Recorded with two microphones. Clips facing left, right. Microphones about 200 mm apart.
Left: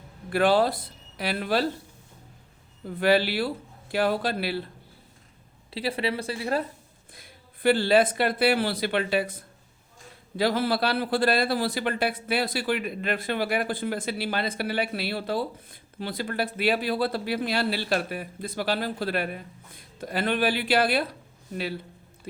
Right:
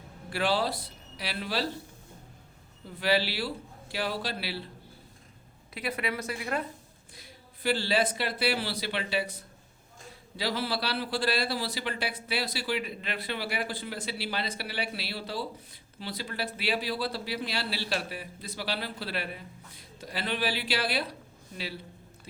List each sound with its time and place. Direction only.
0.3 s speech: 55° left (ahead or behind)
2.8 s a man's voice: 50° left (ahead or behind)
5.7 s a woman's voice: 30° left (ahead or behind)
7.1 s a man's voice: 55° left (ahead or behind)